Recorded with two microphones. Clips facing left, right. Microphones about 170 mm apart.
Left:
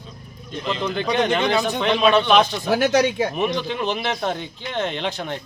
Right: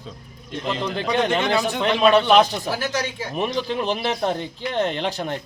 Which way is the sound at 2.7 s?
65° left (ahead or behind).